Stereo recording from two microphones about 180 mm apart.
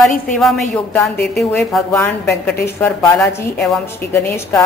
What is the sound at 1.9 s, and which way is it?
A woman's voice, 15° left (ahead or behind).